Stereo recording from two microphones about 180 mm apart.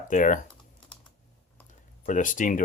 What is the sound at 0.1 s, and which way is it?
Speech, 45° left (ahead or behind).